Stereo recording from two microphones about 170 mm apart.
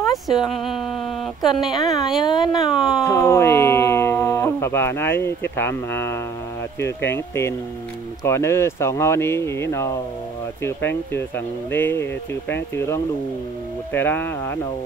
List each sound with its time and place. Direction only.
0.1 s speech: centre (ahead or behind)
2.2 s speech: 25° left (ahead or behind)
2.7 s speech: 5° right (ahead or behind)
3.0 s speech: 15° left (ahead or behind)
11.1 s speech: 10° left (ahead or behind)